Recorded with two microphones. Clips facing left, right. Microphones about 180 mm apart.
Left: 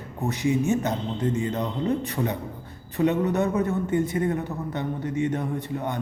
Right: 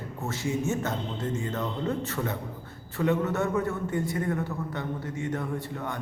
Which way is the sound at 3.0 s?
15° left (ahead or behind).